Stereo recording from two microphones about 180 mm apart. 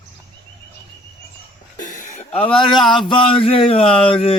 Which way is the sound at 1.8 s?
45° left (ahead or behind).